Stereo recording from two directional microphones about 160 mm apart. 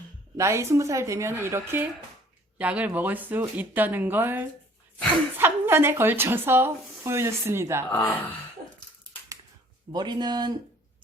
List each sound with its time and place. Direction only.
0.3 s speech: 15° right (ahead or behind)
7.9 s speech: 15° left (ahead or behind)
9.9 s speech: 25° right (ahead or behind)